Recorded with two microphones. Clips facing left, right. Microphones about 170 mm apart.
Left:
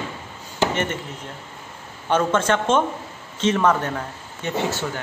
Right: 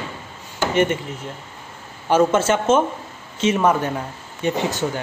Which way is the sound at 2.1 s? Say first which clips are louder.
Right 3 dB; 10° right (ahead or behind).